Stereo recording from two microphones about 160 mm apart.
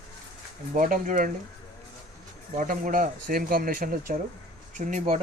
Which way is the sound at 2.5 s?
55° right (ahead or behind).